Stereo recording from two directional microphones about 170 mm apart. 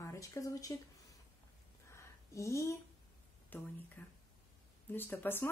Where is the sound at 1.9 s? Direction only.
15° left (ahead or behind).